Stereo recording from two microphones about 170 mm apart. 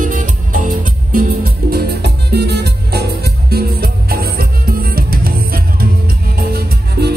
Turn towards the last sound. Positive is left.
turn(degrees=-65)  # may be behind; listen again after turning